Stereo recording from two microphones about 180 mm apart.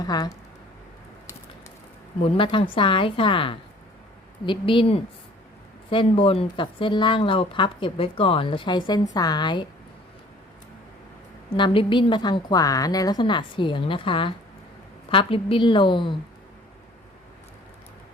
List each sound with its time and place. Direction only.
0.0 s speech: 20° left (ahead or behind)
2.2 s speech: 30° left (ahead or behind)
11.5 s speech: 25° left (ahead or behind)